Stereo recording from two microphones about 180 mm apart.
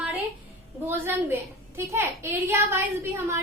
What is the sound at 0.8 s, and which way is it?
A woman's voice, 10° right (ahead or behind).